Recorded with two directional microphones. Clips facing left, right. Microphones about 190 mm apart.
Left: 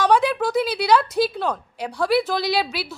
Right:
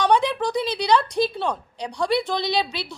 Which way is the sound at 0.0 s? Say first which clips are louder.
Left 2 dB; 5° left (ahead or behind).